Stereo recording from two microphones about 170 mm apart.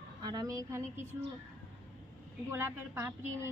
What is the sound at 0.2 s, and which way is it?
Speech, 20° right (ahead or behind).